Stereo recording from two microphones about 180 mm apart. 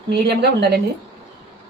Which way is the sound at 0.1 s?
65° right (ahead or behind).